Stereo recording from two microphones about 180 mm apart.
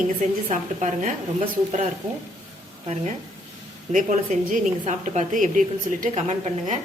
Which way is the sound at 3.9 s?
45° right (ahead or behind).